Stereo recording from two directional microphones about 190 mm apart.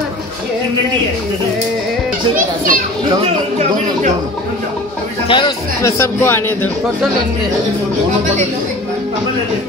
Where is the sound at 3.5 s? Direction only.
35° right (ahead or behind).